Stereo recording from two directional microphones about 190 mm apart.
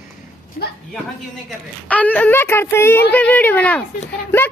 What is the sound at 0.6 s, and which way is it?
Speech, 40° left (ahead or behind).